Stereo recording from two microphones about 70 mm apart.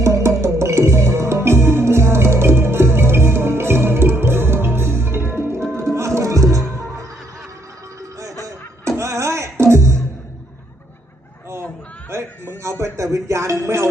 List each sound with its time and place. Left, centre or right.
0.0 s music: right
9.0 s music: right
12.8 s music: right